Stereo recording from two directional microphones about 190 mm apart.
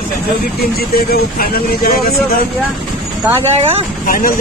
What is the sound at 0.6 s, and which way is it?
Speech, 55° left (ahead or behind).